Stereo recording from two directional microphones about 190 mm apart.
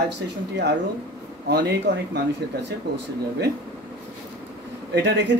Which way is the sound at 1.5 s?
60° right (ahead or behind).